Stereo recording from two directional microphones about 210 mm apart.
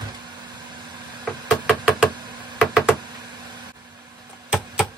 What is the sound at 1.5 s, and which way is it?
Knock, 5° right (ahead or behind).